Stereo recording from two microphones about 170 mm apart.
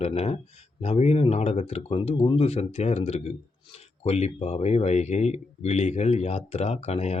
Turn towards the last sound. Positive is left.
turn(degrees=40)  # may be behind; listen again after turning